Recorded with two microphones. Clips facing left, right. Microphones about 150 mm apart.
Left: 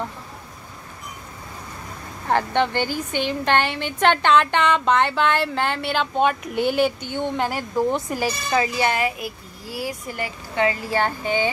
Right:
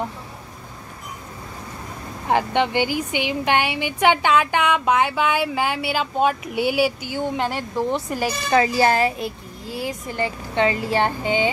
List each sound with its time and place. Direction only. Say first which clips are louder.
2.2 s a woman's voice: right 1 dB; 15° right (ahead or behind)
7.4 s speech: left 1 dB; 5° left (ahead or behind)
8.5 s a child's voice: right 5 dB; 30° right (ahead or behind)
9.7 s speech: right 1 dB; 20° right (ahead or behind)